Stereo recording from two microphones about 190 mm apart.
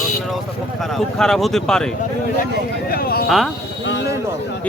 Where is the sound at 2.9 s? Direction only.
50° left (ahead or behind).